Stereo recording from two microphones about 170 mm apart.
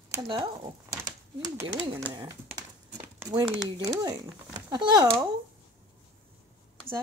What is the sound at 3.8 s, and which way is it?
Speech, 20° right (ahead or behind).